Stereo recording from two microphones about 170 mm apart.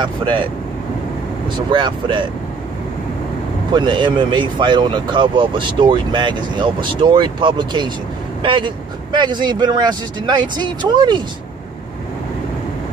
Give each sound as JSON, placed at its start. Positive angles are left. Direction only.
{"t": 0.0, "sound": "speech", "side_deg": -30}
{"t": 1.7, "sound": "speech", "side_deg": -25}
{"t": 3.7, "sound": "speech", "side_deg": -25}